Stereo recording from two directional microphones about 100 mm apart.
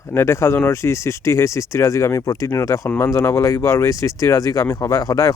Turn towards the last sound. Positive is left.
turn(degrees=35)  # may be behind; listen again after turning